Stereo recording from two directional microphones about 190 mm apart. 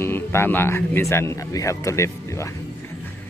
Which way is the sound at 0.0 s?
15° left (ahead or behind).